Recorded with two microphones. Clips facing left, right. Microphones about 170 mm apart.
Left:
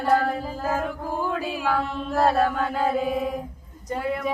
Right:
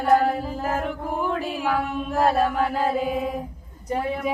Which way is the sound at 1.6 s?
15° right (ahead or behind).